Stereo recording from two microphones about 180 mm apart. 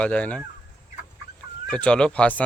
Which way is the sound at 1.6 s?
5° left (ahead or behind).